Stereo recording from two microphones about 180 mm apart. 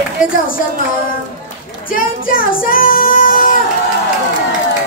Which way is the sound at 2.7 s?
50° left (ahead or behind).